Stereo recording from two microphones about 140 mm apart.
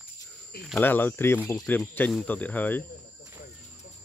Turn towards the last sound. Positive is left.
turn(degrees=10)  # may be behind; listen again after turning